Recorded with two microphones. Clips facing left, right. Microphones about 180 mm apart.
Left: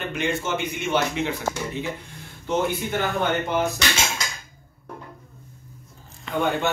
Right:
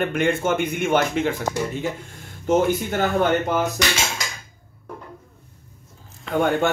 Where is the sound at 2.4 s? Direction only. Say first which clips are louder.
Right 5 dB; 45° right (ahead or behind).